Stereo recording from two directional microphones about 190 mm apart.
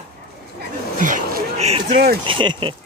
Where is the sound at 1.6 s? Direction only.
35° right (ahead or behind).